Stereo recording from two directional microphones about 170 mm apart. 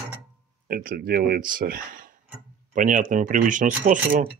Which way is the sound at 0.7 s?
60° right (ahead or behind).